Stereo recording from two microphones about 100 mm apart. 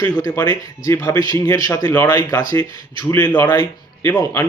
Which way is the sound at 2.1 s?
35° left (ahead or behind).